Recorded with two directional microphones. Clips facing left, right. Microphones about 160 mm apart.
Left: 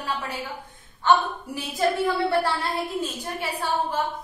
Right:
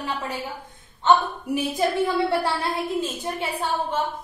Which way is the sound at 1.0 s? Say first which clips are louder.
Right 2 dB; 25° right (ahead or behind).